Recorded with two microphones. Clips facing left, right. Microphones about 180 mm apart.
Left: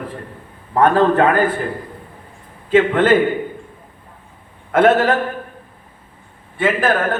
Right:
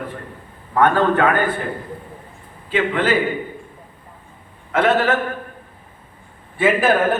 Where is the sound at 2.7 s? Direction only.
50° left (ahead or behind).